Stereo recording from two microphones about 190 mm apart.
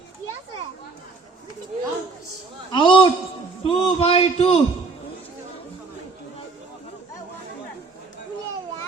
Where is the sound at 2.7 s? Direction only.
25° left (ahead or behind).